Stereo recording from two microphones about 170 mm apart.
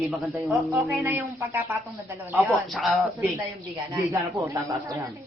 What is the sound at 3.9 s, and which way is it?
Speech, 15° right (ahead or behind).